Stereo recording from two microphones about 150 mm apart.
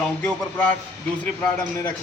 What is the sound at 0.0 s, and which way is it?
Speech, 10° left (ahead or behind).